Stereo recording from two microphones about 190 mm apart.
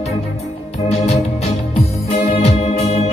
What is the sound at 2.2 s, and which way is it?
Organ, 30° left (ahead or behind).